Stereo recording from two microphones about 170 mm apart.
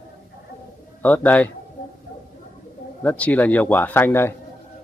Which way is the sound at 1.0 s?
10° left (ahead or behind).